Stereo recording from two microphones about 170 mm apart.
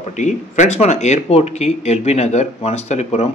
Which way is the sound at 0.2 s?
45° left (ahead or behind).